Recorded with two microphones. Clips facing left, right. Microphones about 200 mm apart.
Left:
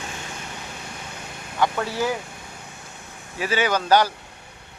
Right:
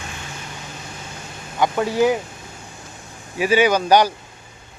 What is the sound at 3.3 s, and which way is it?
Speech, 15° right (ahead or behind).